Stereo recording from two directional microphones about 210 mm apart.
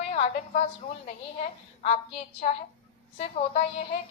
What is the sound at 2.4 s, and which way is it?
Speech, 35° left (ahead or behind).